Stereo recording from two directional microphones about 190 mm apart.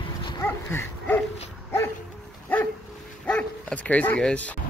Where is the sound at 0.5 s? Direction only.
10° left (ahead or behind).